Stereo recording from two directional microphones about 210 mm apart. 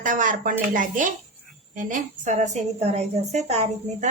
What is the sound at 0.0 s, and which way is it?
A woman's voice, 40° right (ahead or behind).